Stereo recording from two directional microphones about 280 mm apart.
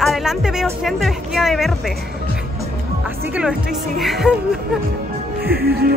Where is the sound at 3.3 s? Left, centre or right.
Centre.